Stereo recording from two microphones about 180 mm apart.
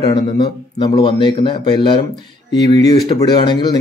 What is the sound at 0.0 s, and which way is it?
Speech, 25° left (ahead or behind).